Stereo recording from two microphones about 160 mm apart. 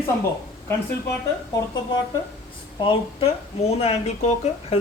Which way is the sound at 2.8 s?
35° left (ahead or behind).